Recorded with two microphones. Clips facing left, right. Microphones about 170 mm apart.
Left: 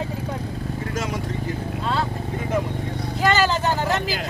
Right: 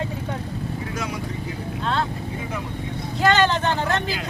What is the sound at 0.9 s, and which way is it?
Vehicle, 45° left (ahead or behind).